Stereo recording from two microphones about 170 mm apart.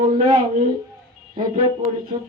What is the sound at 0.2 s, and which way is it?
Speech, 35° right (ahead or behind).